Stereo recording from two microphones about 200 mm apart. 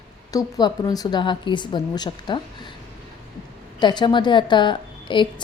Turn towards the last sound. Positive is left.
turn(degrees=25)  # may be behind; listen again after turning